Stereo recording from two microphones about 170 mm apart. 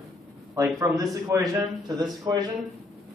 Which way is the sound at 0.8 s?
20° right (ahead or behind).